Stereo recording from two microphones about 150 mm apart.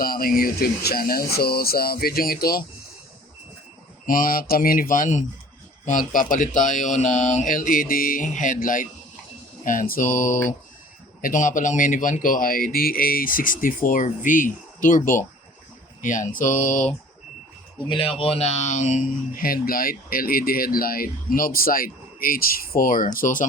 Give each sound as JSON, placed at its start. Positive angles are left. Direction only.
{"t": 0.0, "sound": "speech", "side_deg": 75}
{"t": 4.0, "sound": "speech", "side_deg": 65}
{"t": 18.2, "sound": "speech", "side_deg": 40}